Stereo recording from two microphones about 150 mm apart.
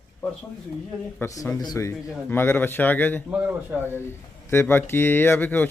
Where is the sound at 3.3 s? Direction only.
15° right (ahead or behind).